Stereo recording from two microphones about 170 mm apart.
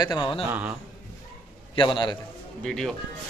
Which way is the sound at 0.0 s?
25° left (ahead or behind).